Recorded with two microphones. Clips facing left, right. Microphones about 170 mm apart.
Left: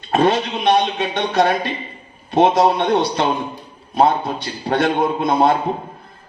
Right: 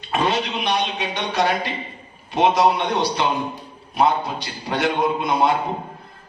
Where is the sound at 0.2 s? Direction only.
55° left (ahead or behind).